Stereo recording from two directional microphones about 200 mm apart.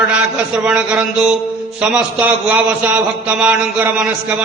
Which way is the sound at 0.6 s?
5° right (ahead or behind).